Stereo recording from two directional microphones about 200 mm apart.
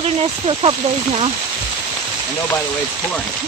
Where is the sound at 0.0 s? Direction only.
30° right (ahead or behind).